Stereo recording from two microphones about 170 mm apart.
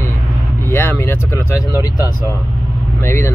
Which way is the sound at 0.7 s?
15° left (ahead or behind).